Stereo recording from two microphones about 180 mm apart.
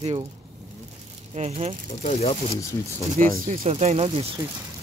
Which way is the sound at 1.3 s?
35° right (ahead or behind).